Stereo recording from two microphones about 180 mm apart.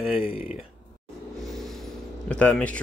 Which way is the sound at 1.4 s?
Centre (ahead or behind).